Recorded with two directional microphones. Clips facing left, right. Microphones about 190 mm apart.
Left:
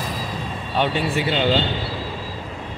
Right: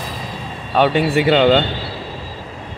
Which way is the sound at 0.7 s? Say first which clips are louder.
Right 7 dB; 65° right (ahead or behind).